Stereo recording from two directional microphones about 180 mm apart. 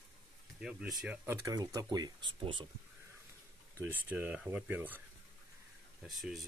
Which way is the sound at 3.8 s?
10° right (ahead or behind).